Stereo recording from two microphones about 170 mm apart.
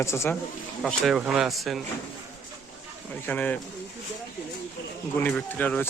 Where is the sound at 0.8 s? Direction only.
Centre (ahead or behind).